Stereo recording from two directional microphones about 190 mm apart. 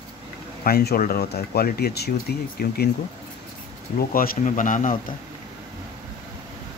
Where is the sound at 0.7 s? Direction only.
55° left (ahead or behind).